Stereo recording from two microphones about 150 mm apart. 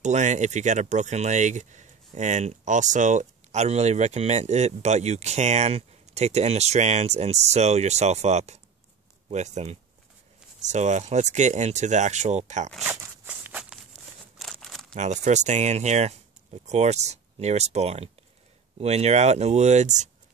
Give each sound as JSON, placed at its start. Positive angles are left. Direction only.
{"t": 0.0, "sound": "speech", "side_deg": -55}
{"t": 12.8, "sound": "a sound", "side_deg": -15}
{"t": 14.4, "sound": "crumpling", "side_deg": 0}
{"t": 15.0, "sound": "speech", "side_deg": -50}